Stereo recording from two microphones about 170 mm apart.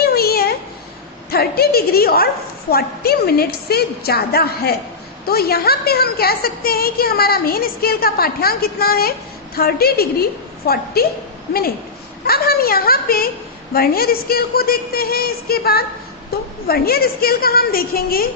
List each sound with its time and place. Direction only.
0.0 s a sound: 65° left (ahead or behind)
1.3 s a woman's voice: 65° left (ahead or behind)
12.2 s a woman's voice: 65° left (ahead or behind)